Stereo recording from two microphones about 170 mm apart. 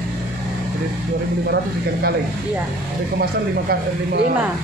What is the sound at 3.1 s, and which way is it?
Speech, 65° right (ahead or behind).